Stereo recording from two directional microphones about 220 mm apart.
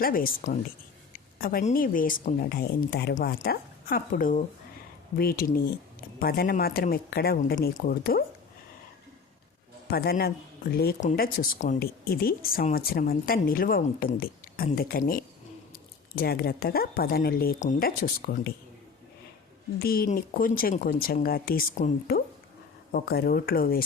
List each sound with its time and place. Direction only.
0.0 s speech: 40° left (ahead or behind)
9.9 s speech: 45° left (ahead or behind)
19.8 s speech: 45° left (ahead or behind)